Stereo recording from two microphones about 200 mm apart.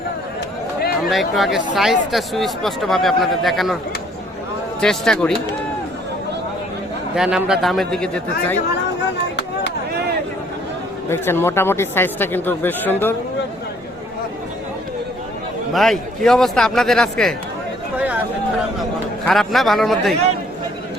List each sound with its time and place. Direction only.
0.8 s a sound: 50° left (ahead or behind)
1.1 s speech: centre (ahead or behind)
4.8 s speech: 5° left (ahead or behind)
7.2 s speech: 5° right (ahead or behind)
11.1 s speech: 10° left (ahead or behind)
15.7 s speech: centre (ahead or behind)
17.9 s a sound: 5° right (ahead or behind)
19.2 s speech: centre (ahead or behind)